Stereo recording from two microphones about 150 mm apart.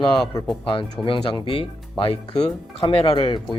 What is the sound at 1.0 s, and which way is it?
Speech, 35° left (ahead or behind).